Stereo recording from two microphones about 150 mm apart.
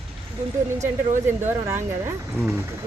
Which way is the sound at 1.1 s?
15° right (ahead or behind).